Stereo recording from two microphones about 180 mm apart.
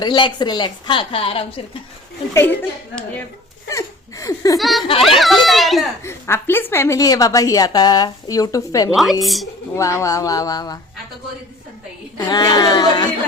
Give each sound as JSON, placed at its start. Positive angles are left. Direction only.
{"t": 0.0, "sound": "a woman's voice", "side_deg": 25}
{"t": 2.3, "sound": "speech", "side_deg": 10}
{"t": 3.7, "sound": "a sound", "side_deg": 20}
{"t": 4.6, "sound": "a child's voice", "side_deg": 0}
{"t": 6.0, "sound": "a woman's voice", "side_deg": 15}
{"t": 9.2, "sound": "a child's voice", "side_deg": 0}
{"t": 9.7, "sound": "a woman's voice", "side_deg": 15}
{"t": 12.1, "sound": "a woman's voice", "side_deg": 20}